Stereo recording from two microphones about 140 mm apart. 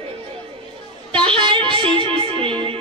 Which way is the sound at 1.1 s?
40° right (ahead or behind).